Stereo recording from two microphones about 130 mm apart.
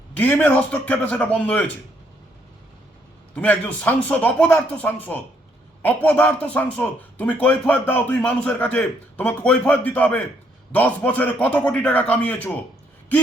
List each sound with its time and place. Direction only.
0.2 s speech: 10° left (ahead or behind)
3.3 s speech: 10° left (ahead or behind)